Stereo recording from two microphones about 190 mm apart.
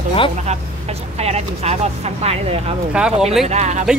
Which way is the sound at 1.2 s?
35° right (ahead or behind).